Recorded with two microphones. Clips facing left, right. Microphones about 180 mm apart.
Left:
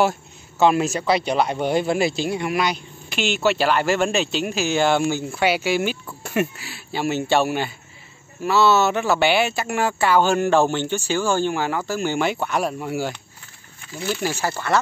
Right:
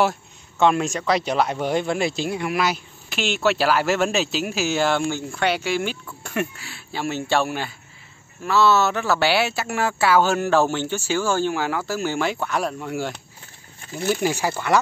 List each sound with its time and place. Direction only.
0.0 s a man's voice: centre (ahead or behind)
8.7 s speech: 20° left (ahead or behind)
9.2 s a man's voice: 5° right (ahead or behind)
14.0 s speech: 15° right (ahead or behind)